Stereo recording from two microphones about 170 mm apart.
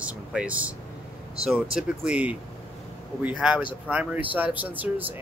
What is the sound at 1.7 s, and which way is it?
Speech, 5° right (ahead or behind).